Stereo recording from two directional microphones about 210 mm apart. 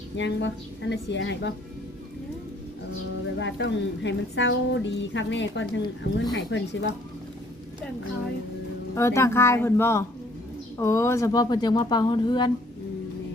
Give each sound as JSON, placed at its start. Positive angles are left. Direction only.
{"t": 0.2, "sound": "a woman's voice", "side_deg": 60}
{"t": 3.3, "sound": "a woman's voice", "side_deg": 60}
{"t": 9.0, "sound": "speech", "side_deg": 15}